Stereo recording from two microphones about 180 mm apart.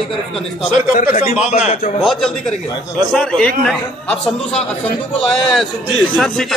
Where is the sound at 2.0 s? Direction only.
Centre (ahead or behind).